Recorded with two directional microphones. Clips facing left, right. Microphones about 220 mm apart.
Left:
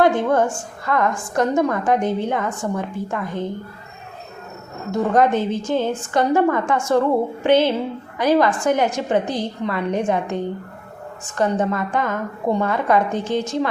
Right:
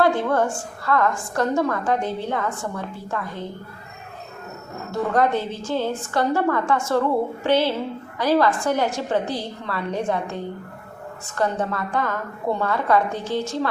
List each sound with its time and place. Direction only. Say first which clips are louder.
0.0 s a woman's voice: left 3 dB; 20° left (ahead or behind)
4.9 s a woman's voice: left 4 dB; 20° left (ahead or behind)